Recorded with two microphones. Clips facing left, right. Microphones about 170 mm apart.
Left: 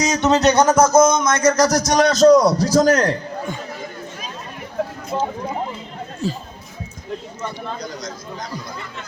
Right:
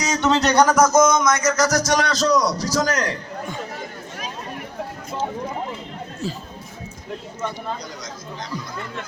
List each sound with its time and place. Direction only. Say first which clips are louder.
0.0 s speech: left 4 dB; 20° left (ahead or behind); by 3.2 s 55° left (ahead or behind)
6.2 s speech: left 4 dB; centre (ahead or behind)